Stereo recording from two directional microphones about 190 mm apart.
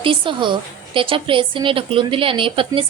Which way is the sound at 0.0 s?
25° right (ahead or behind).